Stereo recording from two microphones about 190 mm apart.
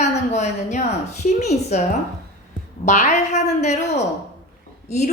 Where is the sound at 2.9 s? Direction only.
35° left (ahead or behind).